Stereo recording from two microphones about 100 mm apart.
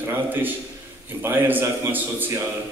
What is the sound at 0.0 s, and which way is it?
A man's voice, 20° right (ahead or behind).